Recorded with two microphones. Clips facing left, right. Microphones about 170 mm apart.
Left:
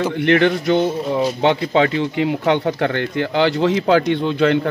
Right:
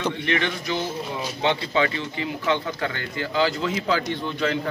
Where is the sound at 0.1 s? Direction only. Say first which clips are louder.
Left 10 dB; 70° left (ahead or behind).